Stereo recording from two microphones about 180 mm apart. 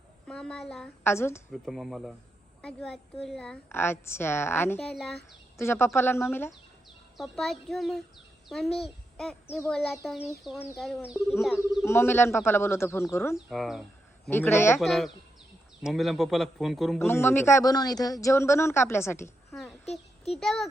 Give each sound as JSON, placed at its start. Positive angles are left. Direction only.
{"t": 0.3, "sound": "a child's voice", "side_deg": 5}
{"t": 1.0, "sound": "a man's voice", "side_deg": 15}
{"t": 1.6, "sound": "a woman's voice", "side_deg": 0}
{"t": 5.5, "sound": "a man's voice", "side_deg": 15}
{"t": 7.2, "sound": "a woman's voice", "side_deg": 0}
{"t": 11.9, "sound": "a man's voice", "side_deg": 15}
{"t": 13.3, "sound": "a woman's voice", "side_deg": 0}
{"t": 14.3, "sound": "a man's voice", "side_deg": 10}
{"t": 14.8, "sound": "a woman's voice", "side_deg": 0}
{"t": 17.1, "sound": "a man's voice", "side_deg": 15}
{"t": 19.5, "sound": "a sound", "side_deg": 0}
{"t": 19.8, "sound": "a sound", "side_deg": 35}
{"t": 20.4, "sound": "a woman's voice", "side_deg": 0}